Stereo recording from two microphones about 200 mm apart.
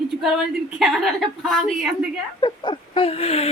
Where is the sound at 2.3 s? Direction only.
20° left (ahead or behind).